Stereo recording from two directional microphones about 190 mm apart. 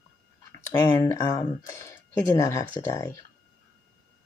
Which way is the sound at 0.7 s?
15° left (ahead or behind).